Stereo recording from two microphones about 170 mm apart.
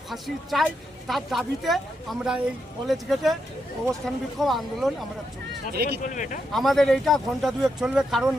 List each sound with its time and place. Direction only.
0.1 s speech: centre (ahead or behind)
5.7 s speech: 70° right (ahead or behind)
6.0 s speech: 50° left (ahead or behind)
6.5 s speech: centre (ahead or behind)